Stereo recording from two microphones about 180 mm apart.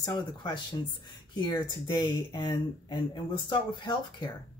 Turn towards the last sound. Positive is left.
turn(degrees=25)  # may be behind; listen again after turning